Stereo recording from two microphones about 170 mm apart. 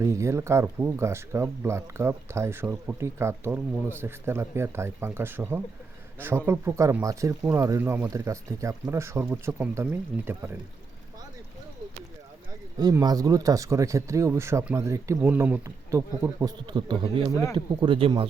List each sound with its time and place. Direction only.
0.0 s speech: 15° right (ahead or behind)
12.8 s speech: 25° right (ahead or behind)